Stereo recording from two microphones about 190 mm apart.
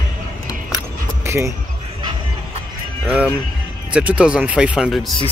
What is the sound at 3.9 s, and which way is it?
Speech, 5° right (ahead or behind).